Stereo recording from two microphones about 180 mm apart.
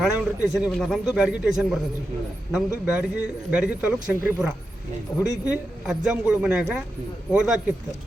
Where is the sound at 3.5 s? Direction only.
5° right (ahead or behind).